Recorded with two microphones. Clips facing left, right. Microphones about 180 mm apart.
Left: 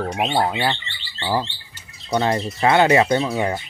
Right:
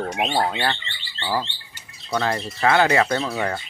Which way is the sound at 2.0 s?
20° left (ahead or behind).